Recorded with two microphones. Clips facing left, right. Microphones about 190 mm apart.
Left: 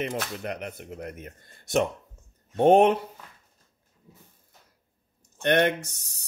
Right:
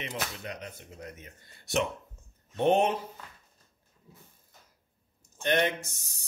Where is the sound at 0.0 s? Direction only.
50° left (ahead or behind).